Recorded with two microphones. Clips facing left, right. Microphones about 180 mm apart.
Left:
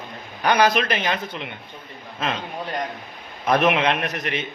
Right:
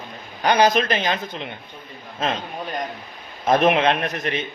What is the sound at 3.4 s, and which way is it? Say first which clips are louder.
Speech: right 2 dB; 25° right (ahead or behind).